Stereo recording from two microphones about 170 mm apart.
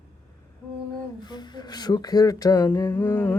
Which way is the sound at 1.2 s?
25° left (ahead or behind).